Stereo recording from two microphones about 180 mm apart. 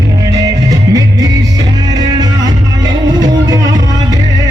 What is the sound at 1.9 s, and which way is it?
Music, 20° right (ahead or behind).